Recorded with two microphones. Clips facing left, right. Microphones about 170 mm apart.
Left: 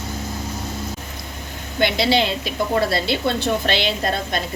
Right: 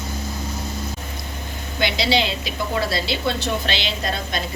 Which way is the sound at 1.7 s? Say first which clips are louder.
Left 3 dB; 55° left (ahead or behind).